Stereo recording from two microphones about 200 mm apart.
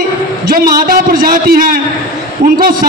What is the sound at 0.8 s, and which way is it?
A man's voice, 45° right (ahead or behind).